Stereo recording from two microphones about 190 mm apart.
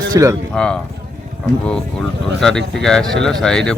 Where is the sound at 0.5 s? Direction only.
5° left (ahead or behind).